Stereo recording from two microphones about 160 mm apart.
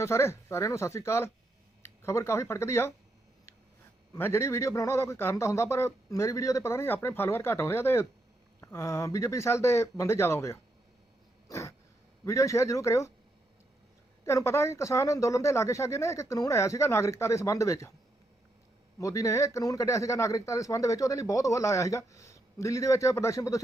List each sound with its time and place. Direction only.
0.0 s a man's voice: 15° left (ahead or behind)
4.1 s a man's voice: 15° left (ahead or behind)
11.4 s a sound: 20° left (ahead or behind)
12.2 s a man's voice: 20° left (ahead or behind)
14.3 s a man's voice: 15° left (ahead or behind)
18.9 s a man's voice: 20° left (ahead or behind)